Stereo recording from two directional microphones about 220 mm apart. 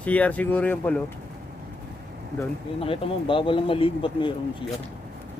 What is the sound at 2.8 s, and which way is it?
Speech, 25° left (ahead or behind).